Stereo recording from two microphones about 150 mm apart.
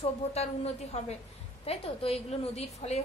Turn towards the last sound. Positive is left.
turn(degrees=45)  # may be behind; listen again after turning